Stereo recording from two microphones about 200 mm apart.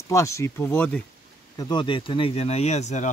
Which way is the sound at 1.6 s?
20° left (ahead or behind).